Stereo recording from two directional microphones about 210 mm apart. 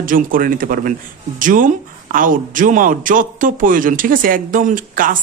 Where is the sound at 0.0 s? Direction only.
40° right (ahead or behind).